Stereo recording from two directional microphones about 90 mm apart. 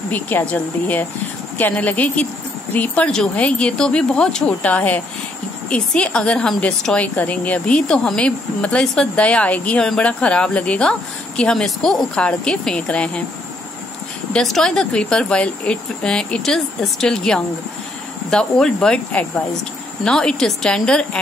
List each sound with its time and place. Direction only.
0.1 s a woman's voice: 20° left (ahead or behind)
14.3 s a woman's voice: 5° left (ahead or behind)